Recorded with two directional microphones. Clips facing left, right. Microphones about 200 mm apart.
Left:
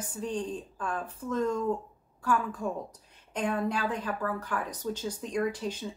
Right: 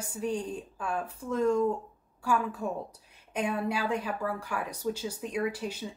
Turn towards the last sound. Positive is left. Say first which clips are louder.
# left 1 dB
turn(degrees=-10)  # may be behind; listen again after turning